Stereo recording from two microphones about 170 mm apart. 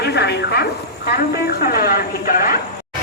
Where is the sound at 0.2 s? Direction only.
75° left (ahead or behind).